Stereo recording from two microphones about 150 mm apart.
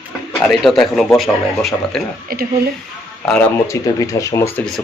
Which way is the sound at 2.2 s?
80° right.